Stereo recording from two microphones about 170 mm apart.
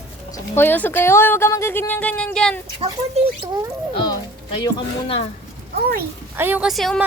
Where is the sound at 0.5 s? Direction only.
10° left (ahead or behind).